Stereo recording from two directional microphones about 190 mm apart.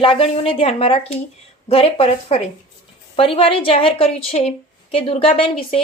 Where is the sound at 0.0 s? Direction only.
30° left (ahead or behind).